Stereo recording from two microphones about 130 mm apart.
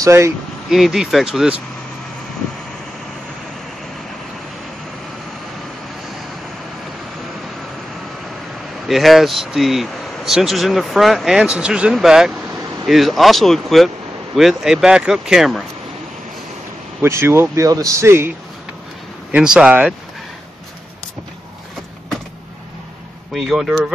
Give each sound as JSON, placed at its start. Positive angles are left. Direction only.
{"t": 0.0, "sound": "speech", "side_deg": -25}
{"t": 0.7, "sound": "speech", "side_deg": 0}
{"t": 8.8, "sound": "speech", "side_deg": 0}
{"t": 17.0, "sound": "speech", "side_deg": -20}
{"t": 19.3, "sound": "speech", "side_deg": -5}
{"t": 23.3, "sound": "speech", "side_deg": 0}